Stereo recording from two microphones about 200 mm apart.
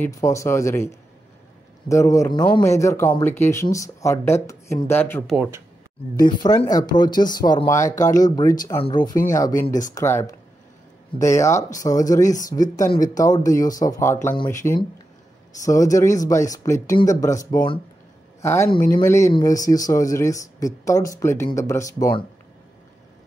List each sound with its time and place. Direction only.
0.0 s speech: 15° left (ahead or behind)
1.9 s speech: 15° left (ahead or behind)
5.3 s speech: 5° right (ahead or behind)
6.2 s speech: 20° left (ahead or behind)
9.7 s speech: 40° left (ahead or behind)
9.9 s speech: 15° left (ahead or behind)
18.7 s speech: 45° left (ahead or behind)
18.9 s speech: 15° left (ahead or behind)